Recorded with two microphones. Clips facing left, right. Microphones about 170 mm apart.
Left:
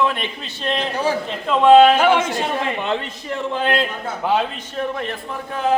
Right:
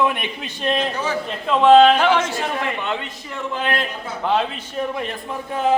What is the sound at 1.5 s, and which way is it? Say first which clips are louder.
Speech: left 1 dB; centre (ahead or behind).